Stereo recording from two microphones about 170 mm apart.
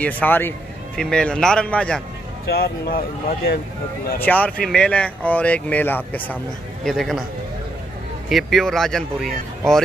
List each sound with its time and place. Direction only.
0.0 s speech: 10° left (ahead or behind)
2.5 s speech: 65° left (ahead or behind)
4.2 s speech: 10° left (ahead or behind)
8.3 s speech: centre (ahead or behind)